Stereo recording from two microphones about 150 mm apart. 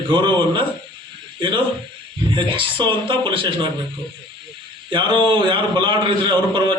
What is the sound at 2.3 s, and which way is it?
A man's voice, 35° right (ahead or behind).